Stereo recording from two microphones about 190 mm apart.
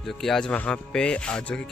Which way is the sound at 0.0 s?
Centre (ahead or behind).